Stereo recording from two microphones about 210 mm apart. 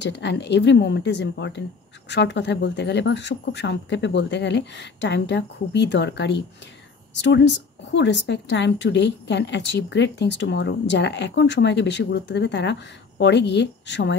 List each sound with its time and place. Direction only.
0.0 s speech: 55° left (ahead or behind)